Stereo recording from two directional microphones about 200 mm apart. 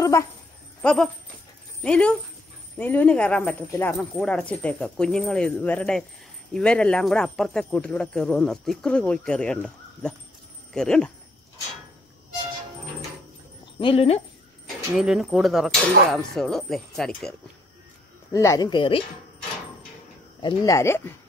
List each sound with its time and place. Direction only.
0.0 s a sound: 15° left (ahead or behind)
0.8 s speech: 5° left (ahead or behind)
10.7 s speech: 5° left (ahead or behind)
13.7 s speech: 25° left (ahead or behind)
15.0 s speech: centre (ahead or behind)
18.3 s speech: 15° left (ahead or behind)
20.4 s speech: 15° left (ahead or behind)